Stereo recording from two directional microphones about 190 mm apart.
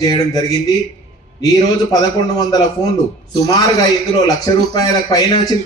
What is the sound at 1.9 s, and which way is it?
A man's voice, 20° left (ahead or behind).